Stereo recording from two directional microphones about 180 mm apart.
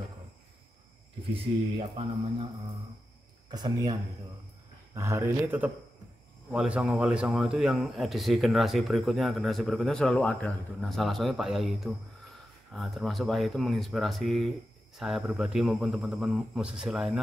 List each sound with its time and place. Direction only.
1.3 s speech: 30° right (ahead or behind)
3.4 s speech: 25° right (ahead or behind); by 17.2 s 5° right (ahead or behind)